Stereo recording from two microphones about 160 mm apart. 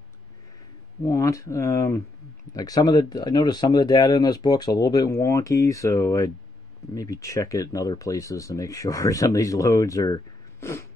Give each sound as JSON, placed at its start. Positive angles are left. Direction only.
{"t": 1.0, "sound": "speech", "side_deg": 20}